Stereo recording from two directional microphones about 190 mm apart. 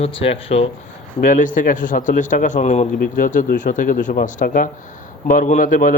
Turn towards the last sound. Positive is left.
turn(degrees=45)  # may be behind; listen again after turning